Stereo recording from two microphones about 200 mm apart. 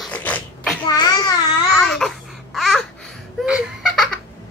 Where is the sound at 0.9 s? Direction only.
20° left (ahead or behind).